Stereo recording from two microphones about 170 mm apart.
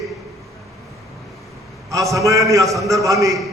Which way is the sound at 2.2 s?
20° right (ahead or behind).